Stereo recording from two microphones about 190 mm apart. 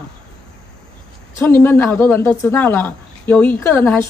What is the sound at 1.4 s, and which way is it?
A woman's voice, 10° left (ahead or behind).